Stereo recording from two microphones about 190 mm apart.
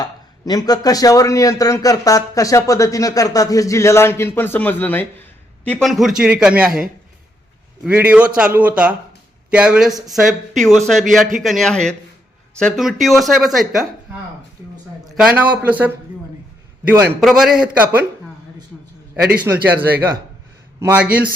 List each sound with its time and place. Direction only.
0.0 s a man's voice: 20° left (ahead or behind); by 6.8 s 5° right (ahead or behind)
7.9 s speech: 5° right (ahead or behind)
15.0 s a man's voice: centre (ahead or behind)
19.5 s speech: 10° right (ahead or behind)